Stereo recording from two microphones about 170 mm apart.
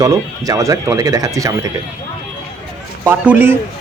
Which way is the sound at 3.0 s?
10° right (ahead or behind).